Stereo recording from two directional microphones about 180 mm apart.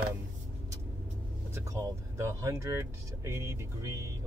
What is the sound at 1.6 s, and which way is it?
Speech, 15° right (ahead or behind).